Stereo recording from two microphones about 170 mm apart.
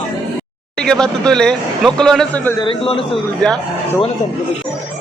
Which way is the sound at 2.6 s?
30° left (ahead or behind).